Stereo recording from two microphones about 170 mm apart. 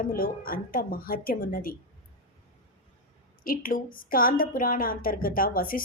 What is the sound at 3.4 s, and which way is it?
A woman's voice, 55° left (ahead or behind).